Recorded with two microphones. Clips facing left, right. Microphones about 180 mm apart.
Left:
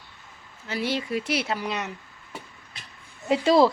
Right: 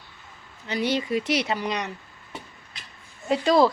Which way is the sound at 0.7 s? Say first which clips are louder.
Right 3 dB; centre (ahead or behind).